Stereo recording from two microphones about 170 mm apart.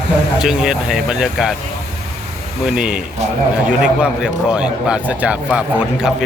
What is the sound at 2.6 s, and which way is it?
A man's voice, 5° right (ahead or behind).